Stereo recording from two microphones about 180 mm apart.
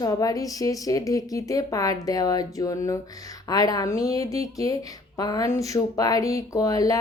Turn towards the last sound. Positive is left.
turn(degrees=20)  # may be behind; listen again after turning